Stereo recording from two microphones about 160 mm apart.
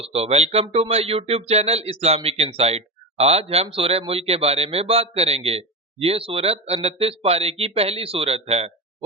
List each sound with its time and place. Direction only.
0.0 s speech: 40° right (ahead or behind)